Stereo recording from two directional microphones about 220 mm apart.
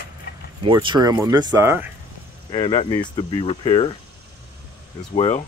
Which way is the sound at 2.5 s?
25° left (ahead or behind).